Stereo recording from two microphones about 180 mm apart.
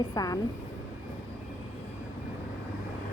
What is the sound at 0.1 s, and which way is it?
Speech, 20° left (ahead or behind).